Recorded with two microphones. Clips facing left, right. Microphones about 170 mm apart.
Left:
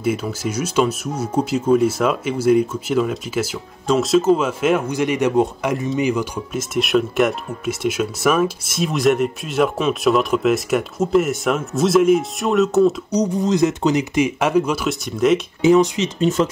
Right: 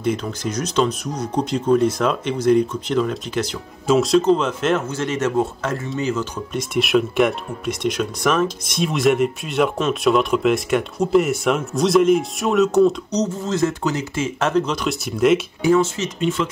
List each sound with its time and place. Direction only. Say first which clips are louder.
0.0 s speech: left 1 dB; 5° left (ahead or behind)
15.6 s speech: left 6 dB; 20° left (ahead or behind)
16.2 s speech: left 4 dB; 40° left (ahead or behind)